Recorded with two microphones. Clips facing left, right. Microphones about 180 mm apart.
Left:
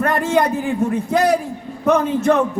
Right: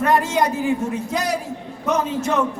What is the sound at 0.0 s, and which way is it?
A man's voice, 55° left (ahead or behind).